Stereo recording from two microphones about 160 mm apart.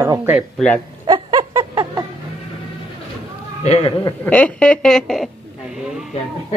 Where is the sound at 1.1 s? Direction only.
30° right (ahead or behind).